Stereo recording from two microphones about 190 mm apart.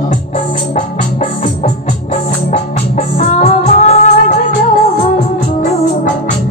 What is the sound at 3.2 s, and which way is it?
Music, 40° left (ahead or behind).